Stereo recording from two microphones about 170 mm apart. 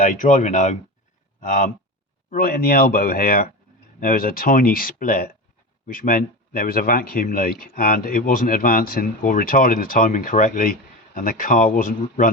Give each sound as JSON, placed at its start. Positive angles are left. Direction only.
{"t": 0.0, "sound": "speech", "side_deg": 50}